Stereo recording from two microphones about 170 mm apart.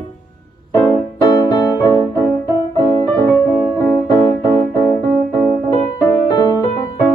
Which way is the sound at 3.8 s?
20° left (ahead or behind).